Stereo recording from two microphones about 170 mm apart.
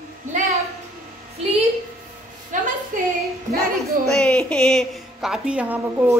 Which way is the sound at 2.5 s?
50° right (ahead or behind).